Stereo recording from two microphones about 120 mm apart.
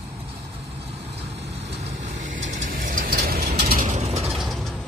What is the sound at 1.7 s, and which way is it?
Vehicle, 80° right.